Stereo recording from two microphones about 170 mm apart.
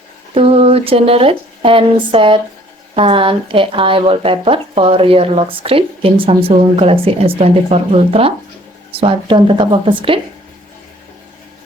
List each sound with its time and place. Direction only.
0.3 s speech: 35° right (ahead or behind)